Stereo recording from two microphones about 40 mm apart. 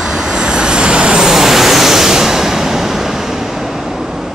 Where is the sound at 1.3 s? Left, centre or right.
Centre.